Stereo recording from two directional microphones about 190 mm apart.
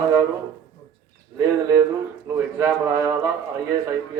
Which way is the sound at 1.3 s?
15° right (ahead or behind).